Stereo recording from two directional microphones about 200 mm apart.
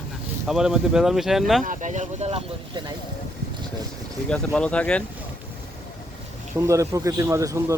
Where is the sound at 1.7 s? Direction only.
35° right (ahead or behind).